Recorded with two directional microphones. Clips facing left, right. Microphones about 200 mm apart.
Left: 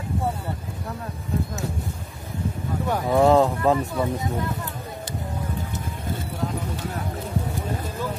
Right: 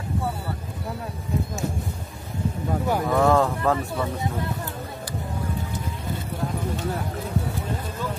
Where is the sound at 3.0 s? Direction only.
20° left (ahead or behind).